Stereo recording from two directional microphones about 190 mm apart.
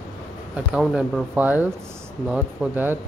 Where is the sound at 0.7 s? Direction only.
5° right (ahead or behind).